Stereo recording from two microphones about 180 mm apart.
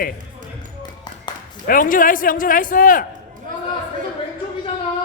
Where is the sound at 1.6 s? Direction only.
50° left (ahead or behind).